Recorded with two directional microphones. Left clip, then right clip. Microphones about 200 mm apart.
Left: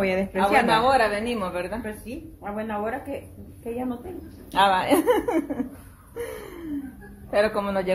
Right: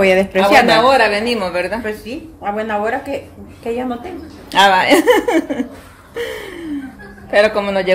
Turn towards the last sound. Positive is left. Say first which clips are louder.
# right 9 dB
turn(degrees=5)  # may be behind; listen again after turning